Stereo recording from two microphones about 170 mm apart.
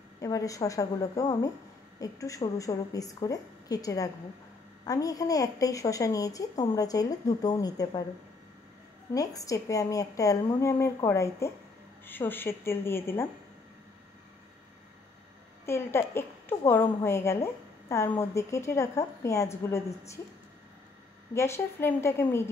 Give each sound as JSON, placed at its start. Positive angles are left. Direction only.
{"t": 0.2, "sound": "a woman's voice", "side_deg": 20}
{"t": 9.1, "sound": "a woman's voice", "side_deg": 20}
{"t": 15.6, "sound": "a woman's voice", "side_deg": 15}
{"t": 21.3, "sound": "a woman's voice", "side_deg": 15}